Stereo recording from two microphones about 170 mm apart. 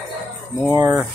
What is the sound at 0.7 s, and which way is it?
Speech, 15° right (ahead or behind).